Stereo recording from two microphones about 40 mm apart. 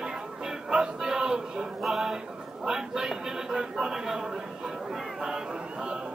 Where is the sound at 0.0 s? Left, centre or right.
Centre.